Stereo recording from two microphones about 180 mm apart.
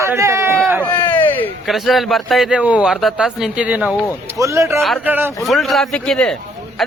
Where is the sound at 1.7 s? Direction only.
Centre (ahead or behind); by 4.7 s 15° right (ahead or behind).